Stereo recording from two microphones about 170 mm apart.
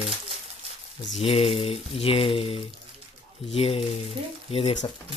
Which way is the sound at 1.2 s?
35° left (ahead or behind).